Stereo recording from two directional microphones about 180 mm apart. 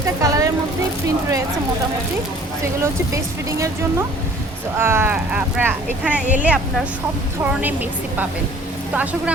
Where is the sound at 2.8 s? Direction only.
15° right (ahead or behind).